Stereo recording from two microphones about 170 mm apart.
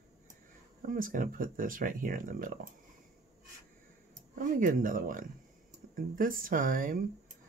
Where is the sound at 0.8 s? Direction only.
55° right (ahead or behind).